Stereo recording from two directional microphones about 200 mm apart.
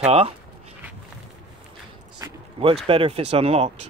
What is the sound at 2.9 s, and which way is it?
Speech, 30° right (ahead or behind).